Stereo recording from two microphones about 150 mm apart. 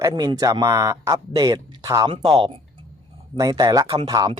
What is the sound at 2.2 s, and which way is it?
Speech, 35° right (ahead or behind).